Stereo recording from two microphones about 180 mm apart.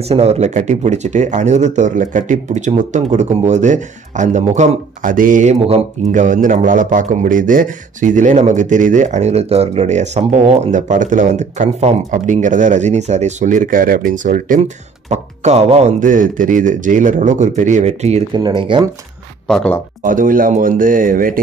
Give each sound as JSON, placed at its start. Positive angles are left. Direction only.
{"t": 0.1, "sound": "speech", "side_deg": -35}
{"t": 18.3, "sound": "speech", "side_deg": -25}
{"t": 19.4, "sound": "speech", "side_deg": 5}
{"t": 20.0, "sound": "speech", "side_deg": -50}